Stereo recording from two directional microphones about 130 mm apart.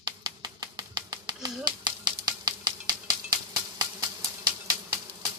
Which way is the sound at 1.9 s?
35° right (ahead or behind).